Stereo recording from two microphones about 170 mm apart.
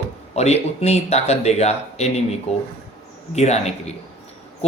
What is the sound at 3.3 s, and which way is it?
Speech, 40° left (ahead or behind).